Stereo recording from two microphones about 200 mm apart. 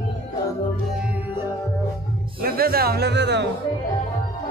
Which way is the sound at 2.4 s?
50° right (ahead or behind).